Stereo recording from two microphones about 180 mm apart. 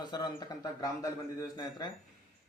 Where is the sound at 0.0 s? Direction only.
25° left (ahead or behind).